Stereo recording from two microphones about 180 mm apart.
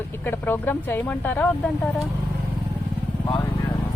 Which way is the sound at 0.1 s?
10° left (ahead or behind).